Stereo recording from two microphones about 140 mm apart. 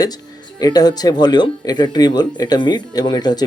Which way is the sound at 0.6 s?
30° left (ahead or behind).